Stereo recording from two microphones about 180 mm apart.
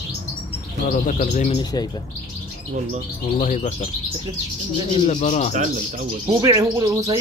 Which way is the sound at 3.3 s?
40° left (ahead or behind).